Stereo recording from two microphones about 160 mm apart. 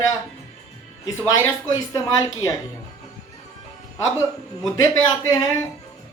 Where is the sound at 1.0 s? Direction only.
25° left (ahead or behind).